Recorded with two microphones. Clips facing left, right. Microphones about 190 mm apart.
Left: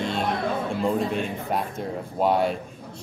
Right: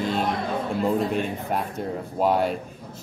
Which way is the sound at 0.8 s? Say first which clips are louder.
Right 1 dB; centre (ahead or behind).